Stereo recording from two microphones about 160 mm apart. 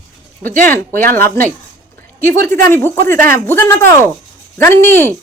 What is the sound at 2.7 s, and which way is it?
A woman's voice, 15° left (ahead or behind).